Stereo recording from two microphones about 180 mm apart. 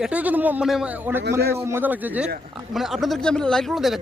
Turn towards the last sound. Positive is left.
turn(degrees=0)  # may be behind; listen again after turning